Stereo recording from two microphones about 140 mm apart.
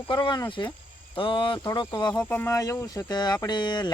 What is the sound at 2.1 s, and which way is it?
Speech, 10° left (ahead or behind).